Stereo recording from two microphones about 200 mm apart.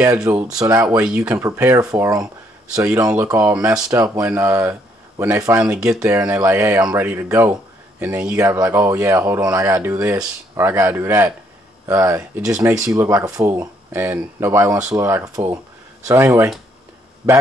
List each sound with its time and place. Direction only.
0.2 s speech: 5° right (ahead or behind)
0.8 s speech: 5° right (ahead or behind)